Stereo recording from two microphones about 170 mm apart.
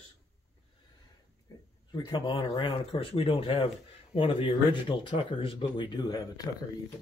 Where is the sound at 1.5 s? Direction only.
20° left (ahead or behind).